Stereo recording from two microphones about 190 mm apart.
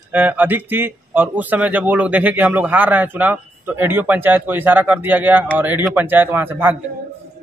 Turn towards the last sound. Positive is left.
turn(degrees=-10)  # may be behind; listen again after turning